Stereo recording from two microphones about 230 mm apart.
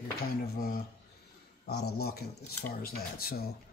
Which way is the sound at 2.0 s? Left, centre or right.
Left.